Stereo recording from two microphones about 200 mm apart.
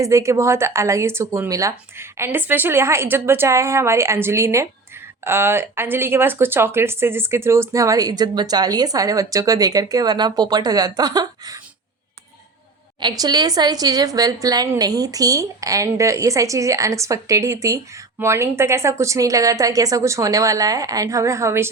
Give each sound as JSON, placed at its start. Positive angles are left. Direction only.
{"t": 0.0, "sound": "speech", "side_deg": -15}
{"t": 13.0, "sound": "speech", "side_deg": -20}